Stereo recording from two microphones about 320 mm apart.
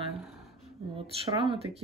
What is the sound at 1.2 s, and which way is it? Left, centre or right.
Speech, centre.